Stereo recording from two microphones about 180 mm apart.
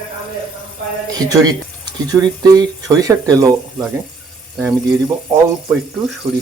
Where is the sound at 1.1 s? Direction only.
20° right (ahead or behind).